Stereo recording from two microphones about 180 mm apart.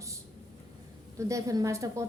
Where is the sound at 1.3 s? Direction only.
15° right (ahead or behind).